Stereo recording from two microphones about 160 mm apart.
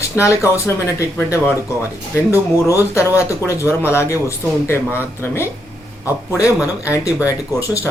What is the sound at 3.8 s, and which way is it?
Speech, 15° left (ahead or behind).